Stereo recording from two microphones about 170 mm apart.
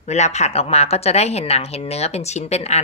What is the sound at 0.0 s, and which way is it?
Speech, 40° left (ahead or behind).